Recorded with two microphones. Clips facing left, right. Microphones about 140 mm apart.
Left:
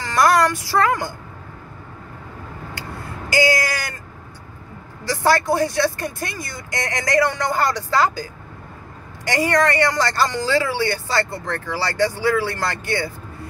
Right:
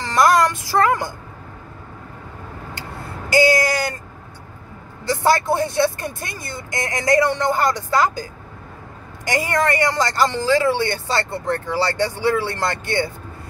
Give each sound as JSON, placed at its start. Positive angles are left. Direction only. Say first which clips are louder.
{"t": 0.0, "sound": "a woman's voice", "louder": "right 1 dB", "side_deg": -25}
{"t": 3.3, "sound": "vehicle", "louder": "right 3 dB", "side_deg": -25}
{"t": 5.0, "sound": "speech", "louder": "right 1 dB", "side_deg": -25}
{"t": 9.3, "sound": "speech", "louder": "left 1 dB", "side_deg": -25}